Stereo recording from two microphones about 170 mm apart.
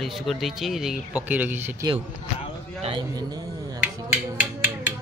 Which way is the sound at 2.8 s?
25° right (ahead or behind).